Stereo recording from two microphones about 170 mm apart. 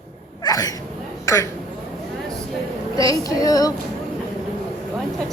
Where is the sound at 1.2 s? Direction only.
15° left (ahead or behind).